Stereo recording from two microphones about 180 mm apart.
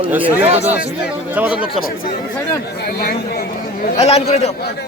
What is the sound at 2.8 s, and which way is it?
Speech, 60° left (ahead or behind).